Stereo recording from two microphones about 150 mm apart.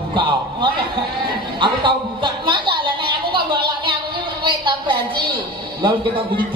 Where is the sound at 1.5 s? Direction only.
30° right (ahead or behind).